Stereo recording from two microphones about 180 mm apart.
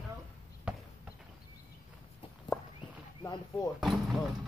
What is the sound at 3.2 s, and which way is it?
Speech, 20° left (ahead or behind).